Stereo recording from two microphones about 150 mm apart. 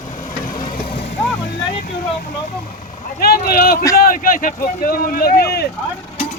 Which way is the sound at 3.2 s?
90° left.